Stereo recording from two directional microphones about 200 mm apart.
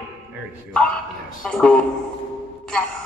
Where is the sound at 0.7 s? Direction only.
5° left (ahead or behind).